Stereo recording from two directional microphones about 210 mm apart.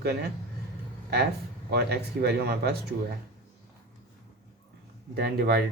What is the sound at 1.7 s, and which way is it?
Speech, 50° right (ahead or behind).